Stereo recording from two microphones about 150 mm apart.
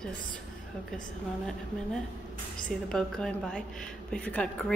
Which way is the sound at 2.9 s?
5° left (ahead or behind).